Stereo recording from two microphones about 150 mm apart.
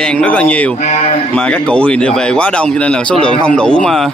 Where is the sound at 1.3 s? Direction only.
10° left (ahead or behind).